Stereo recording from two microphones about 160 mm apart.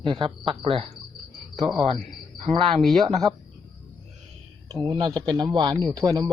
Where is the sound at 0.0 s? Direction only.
30° right (ahead or behind).